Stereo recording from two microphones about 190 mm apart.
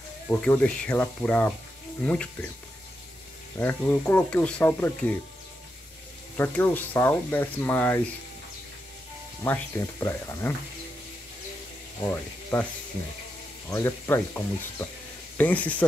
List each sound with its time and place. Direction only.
0.3 s speech: 10° left (ahead or behind)
3.5 s speech: 10° left (ahead or behind)
6.3 s speech: 10° left (ahead or behind)
9.4 s speech: 15° left (ahead or behind)
12.0 s speech: 10° left (ahead or behind)
13.7 s speech: 15° left (ahead or behind)